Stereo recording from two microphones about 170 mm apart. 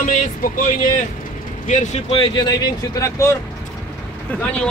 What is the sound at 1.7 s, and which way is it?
Speech, 40° left (ahead or behind).